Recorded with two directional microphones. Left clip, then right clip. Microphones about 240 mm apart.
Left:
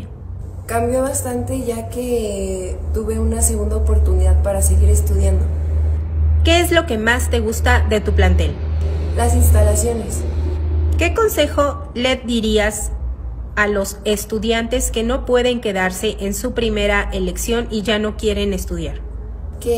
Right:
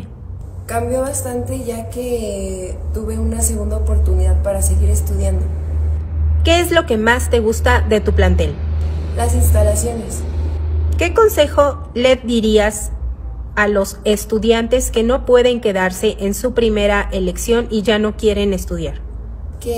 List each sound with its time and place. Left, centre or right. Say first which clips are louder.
0.7 s a woman's voice: left 1 dB; centre
6.4 s a woman's voice: right 1 dB; right
9.4 s a woman's voice: right 2 dB; centre
11.0 s a woman's voice: right 4 dB; right